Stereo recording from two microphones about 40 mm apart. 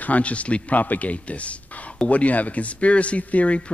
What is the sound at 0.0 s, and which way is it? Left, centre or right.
A man's voice, left.